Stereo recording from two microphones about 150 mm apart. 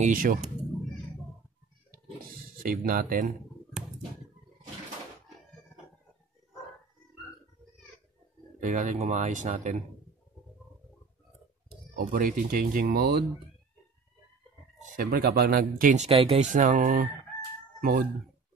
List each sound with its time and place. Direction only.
0.0 s speech: 65° right (ahead or behind)
1.9 s a sound: 80° right
8.5 s speech: 55° right (ahead or behind)
11.9 s speech: 65° right (ahead or behind); by 13.2 s 90° right
14.8 s speech: 65° right (ahead or behind)
16.1 s speech: 40° right (ahead or behind)
16.5 s speech: 55° right (ahead or behind)